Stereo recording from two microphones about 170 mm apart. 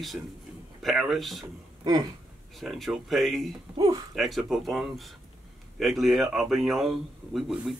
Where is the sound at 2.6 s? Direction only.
Centre (ahead or behind).